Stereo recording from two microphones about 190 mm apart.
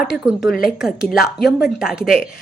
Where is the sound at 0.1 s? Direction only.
Centre (ahead or behind).